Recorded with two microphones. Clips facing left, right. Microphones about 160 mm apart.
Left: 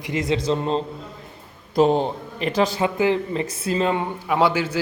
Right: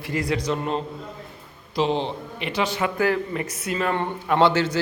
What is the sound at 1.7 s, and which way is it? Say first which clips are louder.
A man's voice: left 5 dB; 45° left (ahead or behind).